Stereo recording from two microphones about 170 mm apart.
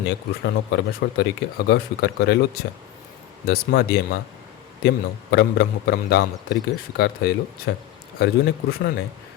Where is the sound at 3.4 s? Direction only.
65° left (ahead or behind).